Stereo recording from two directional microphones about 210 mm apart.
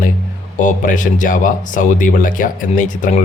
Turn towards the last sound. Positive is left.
turn(degrees=40)  # may be behind; listen again after turning